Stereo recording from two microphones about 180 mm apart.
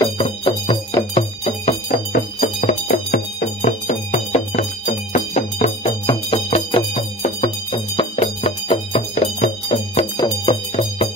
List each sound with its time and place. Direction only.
0.0 s music: 30° left (ahead or behind)
1.9 s music: 45° left (ahead or behind)
6.0 s music: 30° left (ahead or behind)